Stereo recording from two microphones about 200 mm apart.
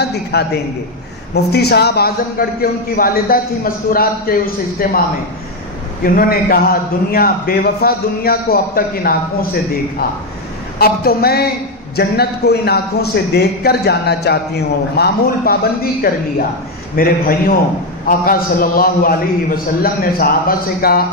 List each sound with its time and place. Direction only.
0.0 s a man's voice: 55° left (ahead or behind)
6.0 s a man's voice: 50° left (ahead or behind)